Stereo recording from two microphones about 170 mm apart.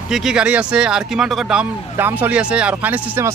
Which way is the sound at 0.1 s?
5° right (ahead or behind).